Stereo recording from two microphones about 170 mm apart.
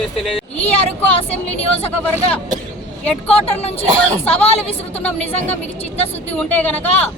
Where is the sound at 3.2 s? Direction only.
35° left (ahead or behind).